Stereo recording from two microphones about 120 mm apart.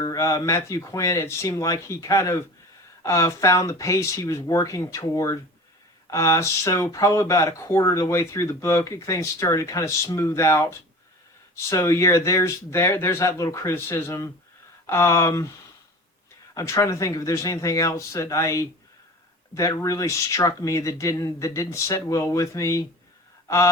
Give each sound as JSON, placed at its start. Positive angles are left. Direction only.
{"t": 0.0, "sound": "speech", "side_deg": 30}
{"t": 16.6, "sound": "speech", "side_deg": 25}